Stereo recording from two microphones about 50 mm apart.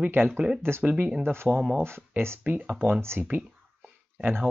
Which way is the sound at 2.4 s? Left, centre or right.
Right.